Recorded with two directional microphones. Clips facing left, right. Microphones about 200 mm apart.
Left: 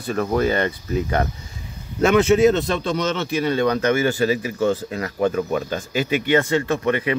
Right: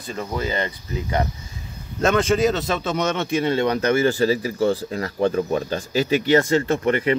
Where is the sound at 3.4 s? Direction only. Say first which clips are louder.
Left 2 dB; 25° right (ahead or behind).